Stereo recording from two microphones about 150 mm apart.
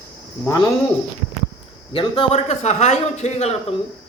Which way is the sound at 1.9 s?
35° left (ahead or behind).